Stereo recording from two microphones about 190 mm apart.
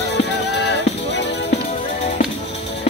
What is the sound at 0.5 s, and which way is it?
Music, 65° left (ahead or behind).